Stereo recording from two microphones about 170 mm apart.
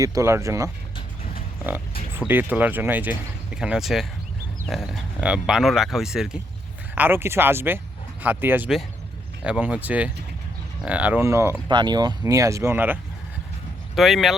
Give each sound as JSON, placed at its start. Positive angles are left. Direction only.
{"t": 0.0, "sound": "speech", "side_deg": -20}
{"t": 1.2, "sound": "a sound", "side_deg": 55}
{"t": 2.1, "sound": "speech", "side_deg": -10}
{"t": 13.9, "sound": "speech", "side_deg": 0}